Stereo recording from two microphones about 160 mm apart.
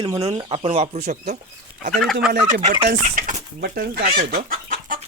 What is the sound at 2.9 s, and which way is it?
Speech, 50° right (ahead or behind).